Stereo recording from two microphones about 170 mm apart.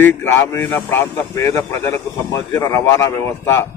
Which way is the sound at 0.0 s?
10° left (ahead or behind).